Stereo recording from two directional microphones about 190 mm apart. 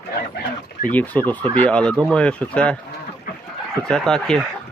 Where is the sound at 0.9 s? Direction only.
10° left (ahead or behind).